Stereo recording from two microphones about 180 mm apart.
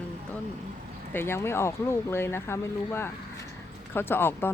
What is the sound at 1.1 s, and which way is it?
Speech, 15° left (ahead or behind).